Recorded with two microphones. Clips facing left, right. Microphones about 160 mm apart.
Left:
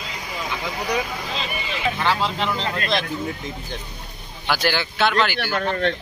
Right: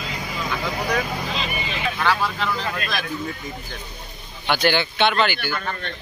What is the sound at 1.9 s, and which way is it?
Speech, 20° left (ahead or behind).